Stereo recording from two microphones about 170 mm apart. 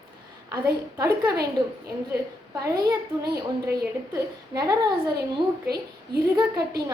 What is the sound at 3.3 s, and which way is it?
Speech, 65° right (ahead or behind).